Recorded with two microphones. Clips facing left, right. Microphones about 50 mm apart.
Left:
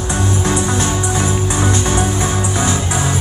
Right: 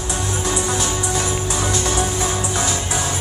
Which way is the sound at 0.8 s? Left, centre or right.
Centre.